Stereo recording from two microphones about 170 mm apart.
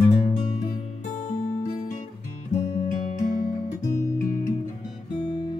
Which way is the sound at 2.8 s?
55° left (ahead or behind).